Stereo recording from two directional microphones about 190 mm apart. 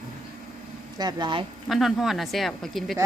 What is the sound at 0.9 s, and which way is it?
Speech, 20° right (ahead or behind).